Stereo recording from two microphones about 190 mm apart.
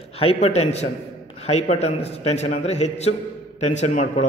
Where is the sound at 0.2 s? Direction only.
30° left (ahead or behind).